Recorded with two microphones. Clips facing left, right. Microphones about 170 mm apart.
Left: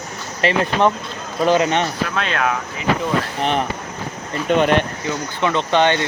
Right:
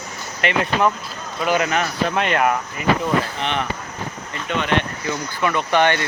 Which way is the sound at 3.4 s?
40° left (ahead or behind).